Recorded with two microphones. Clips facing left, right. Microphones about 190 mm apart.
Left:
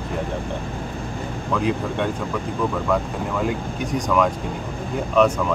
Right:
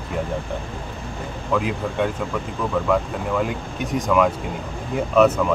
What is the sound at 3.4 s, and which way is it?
Speech, centre (ahead or behind).